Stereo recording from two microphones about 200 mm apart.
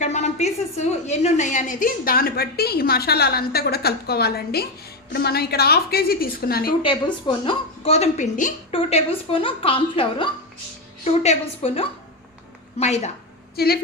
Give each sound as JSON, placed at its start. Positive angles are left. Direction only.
{"t": 0.0, "sound": "a woman's voice", "side_deg": 35}
{"t": 6.8, "sound": "a woman's voice", "side_deg": 25}
{"t": 13.6, "sound": "a woman's voice", "side_deg": 50}